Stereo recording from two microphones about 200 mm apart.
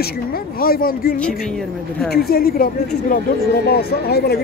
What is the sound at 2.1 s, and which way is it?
Speech, 50° left (ahead or behind).